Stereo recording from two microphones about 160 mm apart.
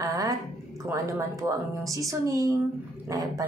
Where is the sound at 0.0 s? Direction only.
20° right (ahead or behind).